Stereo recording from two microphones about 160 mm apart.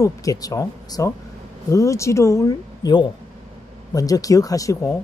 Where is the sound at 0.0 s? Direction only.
20° left (ahead or behind).